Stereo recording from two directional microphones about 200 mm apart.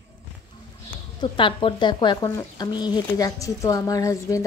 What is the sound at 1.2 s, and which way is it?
Speech, 25° left (ahead or behind).